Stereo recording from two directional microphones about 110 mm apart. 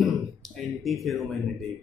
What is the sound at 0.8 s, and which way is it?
Speech, centre (ahead or behind).